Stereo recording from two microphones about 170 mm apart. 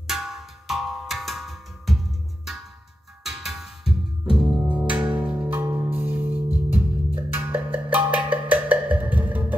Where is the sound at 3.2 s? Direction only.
Centre (ahead or behind).